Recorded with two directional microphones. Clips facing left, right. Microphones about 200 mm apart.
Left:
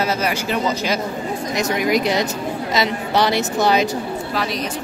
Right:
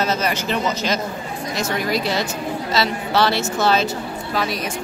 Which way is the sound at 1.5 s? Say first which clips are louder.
Left 3 dB; 15° left (ahead or behind).